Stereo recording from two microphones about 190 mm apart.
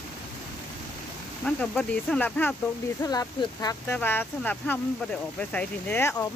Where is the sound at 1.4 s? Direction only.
5° left (ahead or behind).